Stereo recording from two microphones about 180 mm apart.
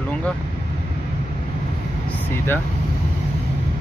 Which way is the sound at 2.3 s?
10° left (ahead or behind).